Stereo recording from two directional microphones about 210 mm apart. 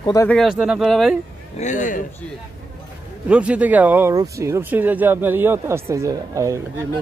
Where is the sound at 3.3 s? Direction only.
5° right (ahead or behind).